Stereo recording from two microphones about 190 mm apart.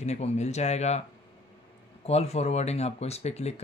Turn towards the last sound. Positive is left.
turn(degrees=35)  # may be behind; listen again after turning